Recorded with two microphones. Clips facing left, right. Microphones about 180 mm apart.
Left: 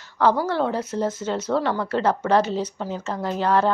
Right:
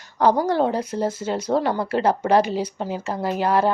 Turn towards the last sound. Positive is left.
turn(degrees=-10)  # may be behind; listen again after turning